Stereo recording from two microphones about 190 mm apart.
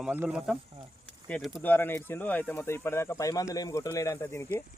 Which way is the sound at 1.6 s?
10° left (ahead or behind).